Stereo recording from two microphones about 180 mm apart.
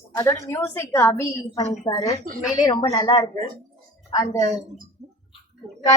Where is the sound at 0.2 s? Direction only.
15° left (ahead or behind).